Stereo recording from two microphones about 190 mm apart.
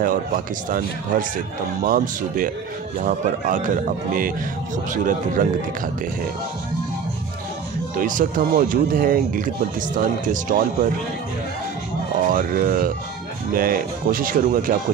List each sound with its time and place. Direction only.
0.7 s speech: 45° right (ahead or behind)
7.9 s speech: 45° right (ahead or behind)
12.3 s speech: 50° right (ahead or behind)